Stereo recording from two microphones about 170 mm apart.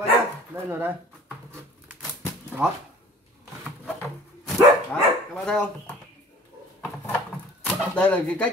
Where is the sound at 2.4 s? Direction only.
10° right (ahead or behind).